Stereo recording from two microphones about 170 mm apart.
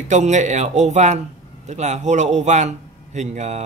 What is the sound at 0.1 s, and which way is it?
A man's voice, 45° right (ahead or behind).